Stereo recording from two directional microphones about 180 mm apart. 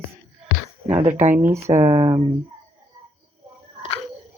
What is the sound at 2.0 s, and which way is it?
Speech, 15° right (ahead or behind).